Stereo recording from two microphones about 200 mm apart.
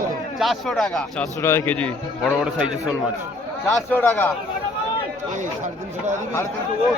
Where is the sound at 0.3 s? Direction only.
Centre (ahead or behind).